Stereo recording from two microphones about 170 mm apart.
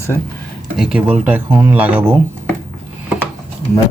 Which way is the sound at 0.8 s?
5° right (ahead or behind).